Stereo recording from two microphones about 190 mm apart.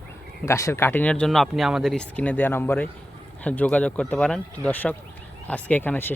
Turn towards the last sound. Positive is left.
turn(degrees=10)  # may be behind; listen again after turning